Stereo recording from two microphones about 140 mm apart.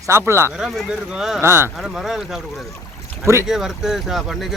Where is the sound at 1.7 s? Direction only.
Centre (ahead or behind).